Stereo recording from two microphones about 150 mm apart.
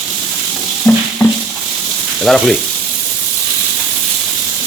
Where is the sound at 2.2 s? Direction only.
Centre (ahead or behind).